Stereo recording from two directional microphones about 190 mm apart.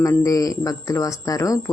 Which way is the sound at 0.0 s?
20° left (ahead or behind).